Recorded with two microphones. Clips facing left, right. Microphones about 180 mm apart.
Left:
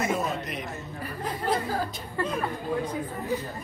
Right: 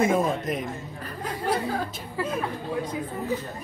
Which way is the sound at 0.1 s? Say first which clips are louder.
Right 5 dB; 50° right (ahead or behind).